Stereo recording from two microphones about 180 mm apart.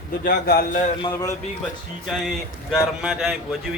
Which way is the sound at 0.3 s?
55° left (ahead or behind).